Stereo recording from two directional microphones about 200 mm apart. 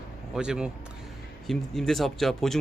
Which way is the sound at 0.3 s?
5° right (ahead or behind).